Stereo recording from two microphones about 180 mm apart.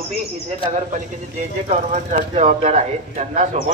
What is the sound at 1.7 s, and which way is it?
Speech, 40° right (ahead or behind).